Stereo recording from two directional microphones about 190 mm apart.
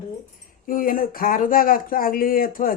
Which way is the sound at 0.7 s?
45° left (ahead or behind).